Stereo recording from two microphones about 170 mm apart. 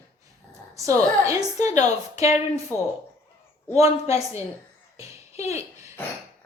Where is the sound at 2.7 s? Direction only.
15° left (ahead or behind).